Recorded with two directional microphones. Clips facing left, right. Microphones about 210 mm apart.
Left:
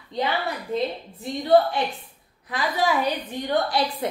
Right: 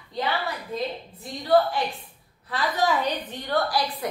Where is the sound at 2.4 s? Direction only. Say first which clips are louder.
Left 1 dB; 10° left (ahead or behind).